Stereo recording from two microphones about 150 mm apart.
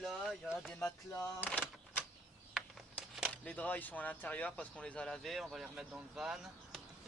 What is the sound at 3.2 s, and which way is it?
Speech, 5° left (ahead or behind).